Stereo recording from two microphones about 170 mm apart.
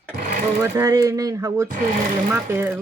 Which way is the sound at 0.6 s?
15° right (ahead or behind).